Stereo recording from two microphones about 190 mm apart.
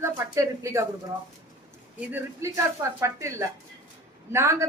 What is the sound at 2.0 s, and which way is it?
Speech, 10° right (ahead or behind).